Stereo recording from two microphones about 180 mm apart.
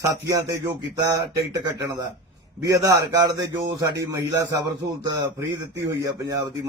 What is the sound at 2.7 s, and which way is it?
Speech, 20° right (ahead or behind).